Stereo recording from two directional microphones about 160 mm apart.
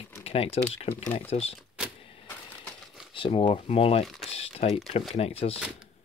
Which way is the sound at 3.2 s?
35° left (ahead or behind).